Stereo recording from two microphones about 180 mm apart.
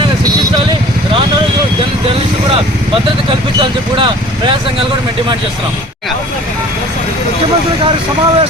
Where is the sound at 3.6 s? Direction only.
25° right (ahead or behind).